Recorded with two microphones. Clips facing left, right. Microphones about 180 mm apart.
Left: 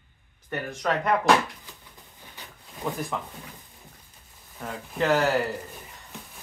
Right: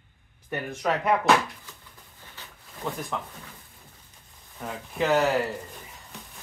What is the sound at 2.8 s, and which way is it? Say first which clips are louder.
Speech: left 2 dB; 5° left (ahead or behind).